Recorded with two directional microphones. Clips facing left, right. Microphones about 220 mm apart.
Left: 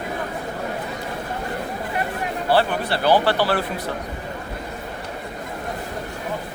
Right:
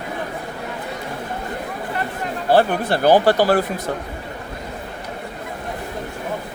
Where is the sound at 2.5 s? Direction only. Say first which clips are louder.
Right 4 dB; 50° right (ahead or behind).